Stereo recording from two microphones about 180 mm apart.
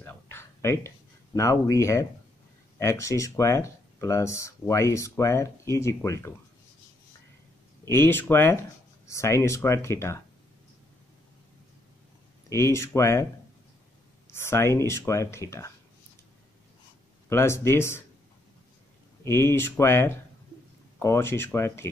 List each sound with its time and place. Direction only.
0.0 s a sound: 15° left (ahead or behind)
2.8 s speech: 15° left (ahead or behind)
7.9 s speech: 15° left (ahead or behind)
12.4 s speech: 15° left (ahead or behind)
14.3 s speech: 15° left (ahead or behind)
17.3 s speech: 15° left (ahead or behind)
19.2 s speech: 15° left (ahead or behind)